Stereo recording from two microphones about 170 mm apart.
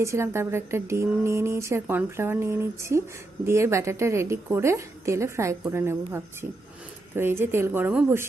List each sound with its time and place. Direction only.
0.0 s speech: 15° right (ahead or behind)